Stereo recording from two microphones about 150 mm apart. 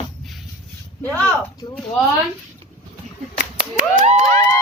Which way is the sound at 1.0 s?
10° left (ahead or behind).